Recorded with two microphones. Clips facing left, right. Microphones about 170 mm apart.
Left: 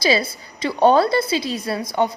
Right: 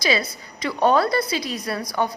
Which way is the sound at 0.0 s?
30° left (ahead or behind).